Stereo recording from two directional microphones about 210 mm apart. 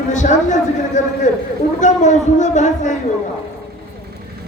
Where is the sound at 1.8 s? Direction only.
35° left (ahead or behind).